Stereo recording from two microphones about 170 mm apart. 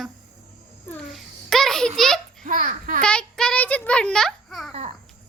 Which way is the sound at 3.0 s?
5° left (ahead or behind).